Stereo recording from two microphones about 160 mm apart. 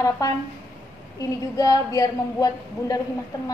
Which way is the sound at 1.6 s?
20° left (ahead or behind).